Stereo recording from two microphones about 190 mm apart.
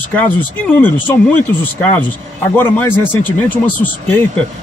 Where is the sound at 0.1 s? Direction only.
10° left (ahead or behind).